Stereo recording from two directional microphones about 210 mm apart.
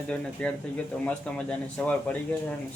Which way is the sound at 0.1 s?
5° left (ahead or behind).